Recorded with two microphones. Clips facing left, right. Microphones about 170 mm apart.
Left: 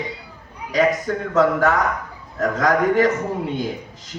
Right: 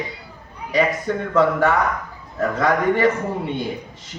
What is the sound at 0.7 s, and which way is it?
Speech, 40° left (ahead or behind).